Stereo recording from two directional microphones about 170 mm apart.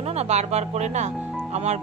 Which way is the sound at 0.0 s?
40° right (ahead or behind).